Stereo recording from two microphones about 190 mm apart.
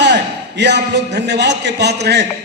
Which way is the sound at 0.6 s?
65° right (ahead or behind).